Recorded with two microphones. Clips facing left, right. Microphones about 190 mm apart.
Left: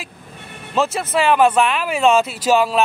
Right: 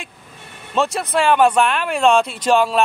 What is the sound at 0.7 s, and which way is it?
Speech, centre (ahead or behind).